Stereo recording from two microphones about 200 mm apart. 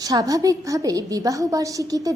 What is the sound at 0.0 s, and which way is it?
A woman's voice, 15° right (ahead or behind).